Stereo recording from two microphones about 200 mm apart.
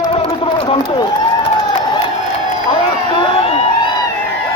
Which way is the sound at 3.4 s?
30° left (ahead or behind).